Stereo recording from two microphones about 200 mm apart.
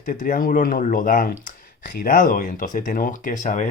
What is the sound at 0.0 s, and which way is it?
Speech, 45° left (ahead or behind).